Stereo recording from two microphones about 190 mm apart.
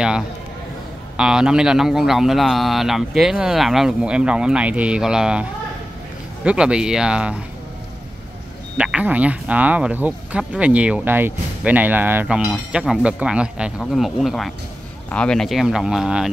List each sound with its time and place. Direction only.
1.1 s a man's voice: 5° right (ahead or behind)
8.7 s a man's voice: 5° right (ahead or behind)